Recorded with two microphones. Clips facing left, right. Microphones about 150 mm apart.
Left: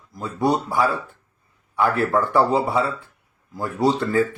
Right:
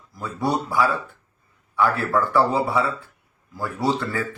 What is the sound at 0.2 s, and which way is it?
Speech, 25° left (ahead or behind).